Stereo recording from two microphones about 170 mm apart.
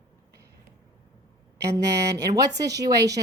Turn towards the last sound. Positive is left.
turn(degrees=-20)  # may be behind; listen again after turning